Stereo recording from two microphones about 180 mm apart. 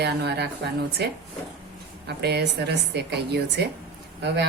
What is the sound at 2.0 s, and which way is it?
A woman's voice, 65° right (ahead or behind).